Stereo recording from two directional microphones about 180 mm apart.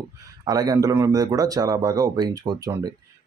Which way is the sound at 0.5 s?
20° right (ahead or behind).